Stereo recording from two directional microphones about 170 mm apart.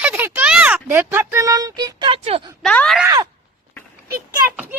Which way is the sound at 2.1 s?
35° right (ahead or behind).